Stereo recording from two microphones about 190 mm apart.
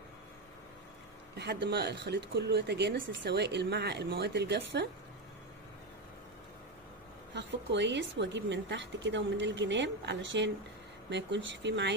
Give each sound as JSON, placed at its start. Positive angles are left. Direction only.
{"t": 1.3, "sound": "speech", "side_deg": -60}
{"t": 7.3, "sound": "a woman's voice", "side_deg": -65}